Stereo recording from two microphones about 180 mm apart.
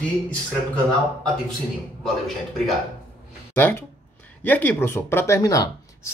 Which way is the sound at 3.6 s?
10° left (ahead or behind).